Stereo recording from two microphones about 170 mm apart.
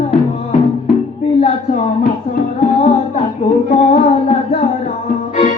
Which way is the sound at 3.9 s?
40° left (ahead or behind).